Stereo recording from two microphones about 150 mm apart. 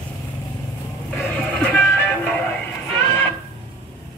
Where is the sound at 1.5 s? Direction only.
10° left (ahead or behind).